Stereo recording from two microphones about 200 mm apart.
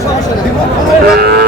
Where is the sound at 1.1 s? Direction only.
55° right (ahead or behind).